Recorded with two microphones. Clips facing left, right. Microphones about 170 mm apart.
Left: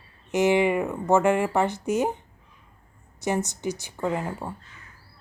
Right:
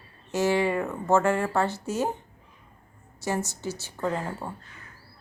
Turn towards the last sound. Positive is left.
turn(degrees=10)  # may be behind; listen again after turning